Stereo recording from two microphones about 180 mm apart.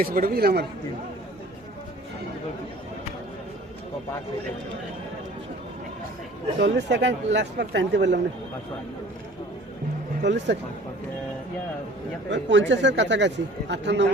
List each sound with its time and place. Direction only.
0.0 s speech: 55° right (ahead or behind)
6.6 s speech: 75° right (ahead or behind)
10.2 s speech: 75° right (ahead or behind)
12.3 s speech: 80° right